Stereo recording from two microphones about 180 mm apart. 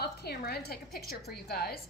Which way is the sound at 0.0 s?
65° left (ahead or behind).